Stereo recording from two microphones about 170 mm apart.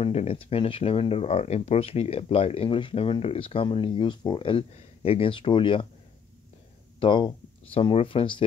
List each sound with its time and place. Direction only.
0.0 s speech: 40° left (ahead or behind)
7.0 s speech: 30° left (ahead or behind)